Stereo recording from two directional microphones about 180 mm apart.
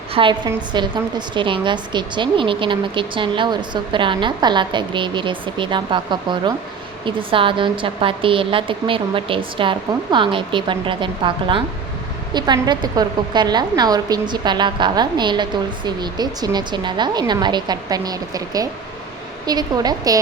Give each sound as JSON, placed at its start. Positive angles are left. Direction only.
{"t": 0.1, "sound": "a woman's voice", "side_deg": -25}